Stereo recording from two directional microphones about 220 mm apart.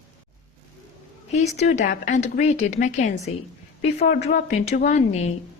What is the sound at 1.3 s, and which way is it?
A woman's voice, 30° left (ahead or behind).